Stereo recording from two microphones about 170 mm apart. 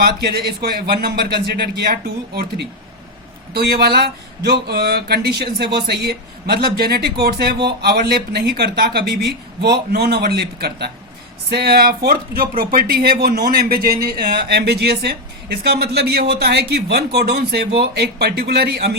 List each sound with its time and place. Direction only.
0.0 s speech: 65° right (ahead or behind)